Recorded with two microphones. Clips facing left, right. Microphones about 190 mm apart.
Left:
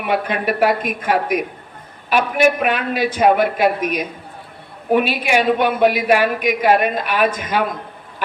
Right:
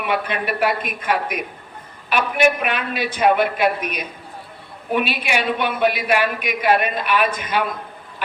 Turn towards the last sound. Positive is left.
turn(degrees=40)  # may be behind; listen again after turning